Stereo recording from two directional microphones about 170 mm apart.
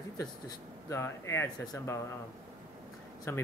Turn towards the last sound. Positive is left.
turn(degrees=15)  # may be behind; listen again after turning